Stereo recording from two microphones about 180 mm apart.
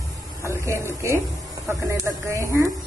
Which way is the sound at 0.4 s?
15° right (ahead or behind).